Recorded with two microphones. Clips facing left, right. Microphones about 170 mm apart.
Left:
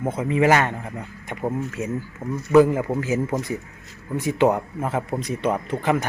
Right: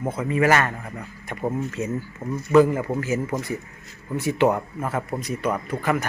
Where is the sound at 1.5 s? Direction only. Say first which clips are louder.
Even; 10° left (ahead or behind).